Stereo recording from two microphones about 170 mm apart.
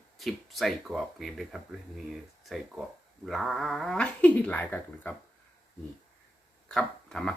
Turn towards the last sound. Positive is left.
turn(degrees=5)  # may be behind; listen again after turning